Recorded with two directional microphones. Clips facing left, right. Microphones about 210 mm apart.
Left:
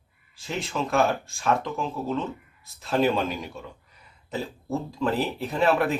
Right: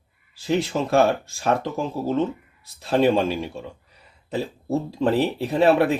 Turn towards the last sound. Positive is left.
turn(degrees=-35)  # may be behind; listen again after turning